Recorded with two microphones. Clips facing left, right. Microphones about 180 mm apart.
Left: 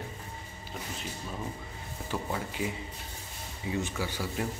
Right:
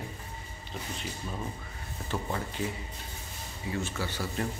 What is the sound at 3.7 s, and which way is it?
Speech, 15° left (ahead or behind).